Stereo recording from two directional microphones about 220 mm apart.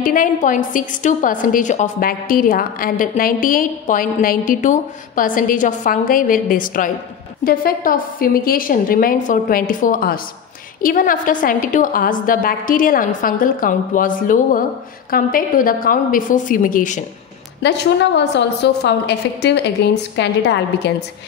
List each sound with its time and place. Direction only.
0.0 s a woman's voice: 40° left (ahead or behind)
17.6 s a woman's voice: 50° left (ahead or behind)